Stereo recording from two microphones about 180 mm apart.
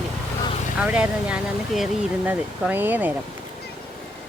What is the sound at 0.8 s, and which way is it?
Speech, 10° right (ahead or behind).